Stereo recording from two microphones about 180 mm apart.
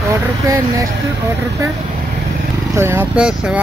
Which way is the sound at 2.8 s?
15° right (ahead or behind).